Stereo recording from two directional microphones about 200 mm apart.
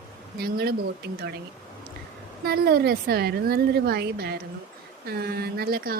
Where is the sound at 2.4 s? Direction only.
50° right (ahead or behind).